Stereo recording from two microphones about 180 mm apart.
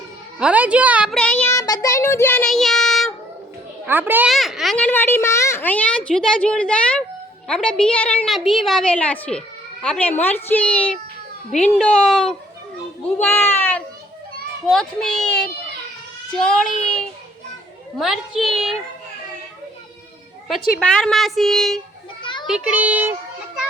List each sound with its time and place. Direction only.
0.3 s a woman's voice: 5° right (ahead or behind)
1.1 s child singing: 5° left (ahead or behind)
3.8 s a woman's voice: 10° right (ahead or behind)
4.3 s a woman's voice: centre (ahead or behind)
11.5 s speech: 40° left (ahead or behind)
11.8 s a woman's voice: 5° left (ahead or behind)
13.2 s a woman's voice: 10° left (ahead or behind)
20.7 s a woman's voice: centre (ahead or behind)
22.2 s children playing: 25° left (ahead or behind)
22.4 s a woman's voice: 5° right (ahead or behind)